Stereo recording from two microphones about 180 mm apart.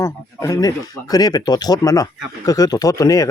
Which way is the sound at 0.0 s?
20° left (ahead or behind).